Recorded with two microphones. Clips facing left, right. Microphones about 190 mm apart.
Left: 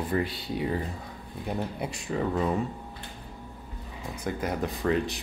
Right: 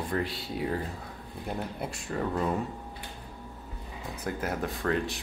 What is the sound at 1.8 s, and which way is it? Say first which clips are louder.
Speech: left 3 dB; centre (ahead or behind).